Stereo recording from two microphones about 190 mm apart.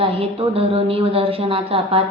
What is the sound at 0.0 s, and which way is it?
A woman's voice, 30° right (ahead or behind).